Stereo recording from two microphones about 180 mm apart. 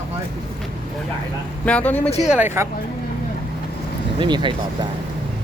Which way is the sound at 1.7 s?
10° left (ahead or behind).